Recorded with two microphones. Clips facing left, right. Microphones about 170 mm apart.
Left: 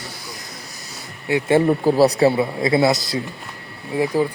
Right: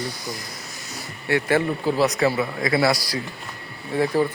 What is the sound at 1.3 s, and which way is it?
Speech, 15° left (ahead or behind).